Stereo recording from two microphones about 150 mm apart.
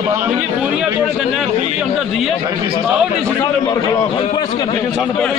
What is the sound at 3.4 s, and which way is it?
A man's voice, 20° left (ahead or behind).